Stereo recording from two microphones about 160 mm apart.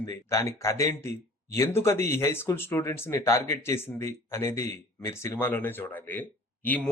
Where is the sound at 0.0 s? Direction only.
20° left (ahead or behind).